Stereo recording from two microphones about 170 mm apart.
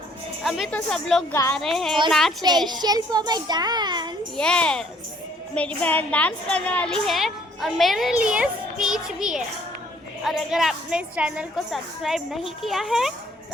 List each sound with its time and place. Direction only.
0.4 s a woman's voice: centre (ahead or behind)
1.3 s speech: 15° left (ahead or behind)
1.5 s a woman's voice: centre (ahead or behind)
2.8 s a child's voice: 25° right (ahead or behind)
4.4 s a woman's voice: 5° left (ahead or behind)